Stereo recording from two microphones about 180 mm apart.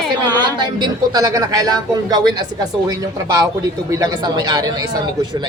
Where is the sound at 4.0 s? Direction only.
20° right (ahead or behind).